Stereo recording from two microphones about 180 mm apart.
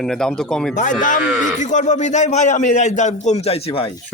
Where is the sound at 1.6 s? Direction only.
40° left (ahead or behind).